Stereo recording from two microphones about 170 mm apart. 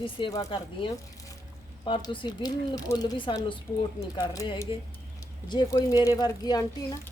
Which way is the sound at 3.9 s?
20° left (ahead or behind).